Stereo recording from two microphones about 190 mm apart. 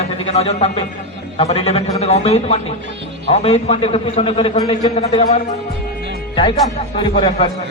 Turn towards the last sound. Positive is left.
turn(degrees=30)  # may be behind; listen again after turning